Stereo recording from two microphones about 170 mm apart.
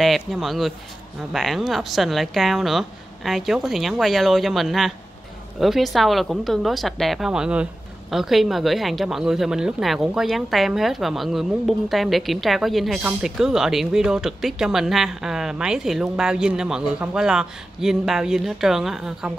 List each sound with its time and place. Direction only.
0.0 s speech: centre (ahead or behind)